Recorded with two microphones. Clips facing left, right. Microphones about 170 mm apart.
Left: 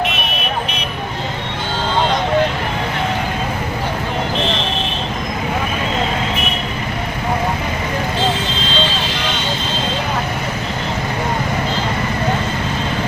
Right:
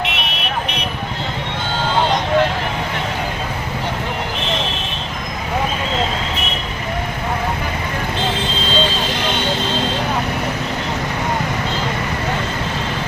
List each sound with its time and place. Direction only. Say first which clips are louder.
0.0 s vehicle: left 3 dB; 70° right (ahead or behind)